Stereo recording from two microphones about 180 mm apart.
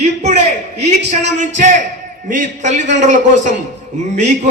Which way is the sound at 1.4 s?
45° right (ahead or behind).